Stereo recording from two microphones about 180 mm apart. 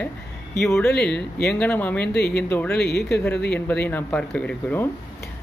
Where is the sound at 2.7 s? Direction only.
60° left (ahead or behind).